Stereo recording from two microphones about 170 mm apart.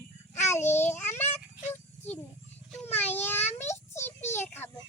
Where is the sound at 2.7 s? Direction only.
10° left (ahead or behind).